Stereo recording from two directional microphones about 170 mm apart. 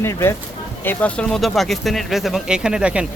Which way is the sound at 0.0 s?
15° left (ahead or behind).